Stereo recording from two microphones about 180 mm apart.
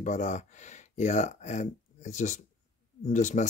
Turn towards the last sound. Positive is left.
turn(degrees=40)  # may be behind; listen again after turning